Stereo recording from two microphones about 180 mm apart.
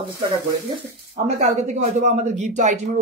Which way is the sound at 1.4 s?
40° right (ahead or behind).